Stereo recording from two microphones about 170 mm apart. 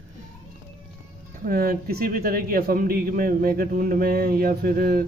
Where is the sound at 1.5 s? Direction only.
60° right (ahead or behind).